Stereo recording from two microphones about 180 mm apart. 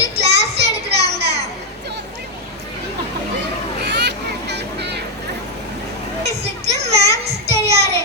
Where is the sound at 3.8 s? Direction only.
70° right (ahead or behind).